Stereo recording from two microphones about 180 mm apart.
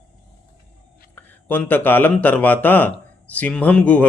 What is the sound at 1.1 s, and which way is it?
Speech, 10° left (ahead or behind).